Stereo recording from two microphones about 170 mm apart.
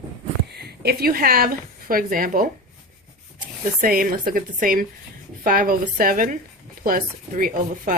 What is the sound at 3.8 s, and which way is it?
A woman's voice, 55° right (ahead or behind).